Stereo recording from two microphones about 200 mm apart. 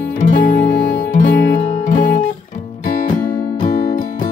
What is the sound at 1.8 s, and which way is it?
Music, 40° left (ahead or behind).